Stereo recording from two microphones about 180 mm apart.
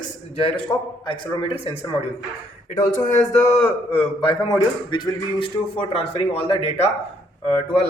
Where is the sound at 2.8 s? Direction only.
45° left (ahead or behind).